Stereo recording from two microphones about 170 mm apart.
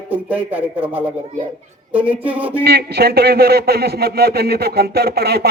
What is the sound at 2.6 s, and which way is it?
A man's voice, 75° right (ahead or behind).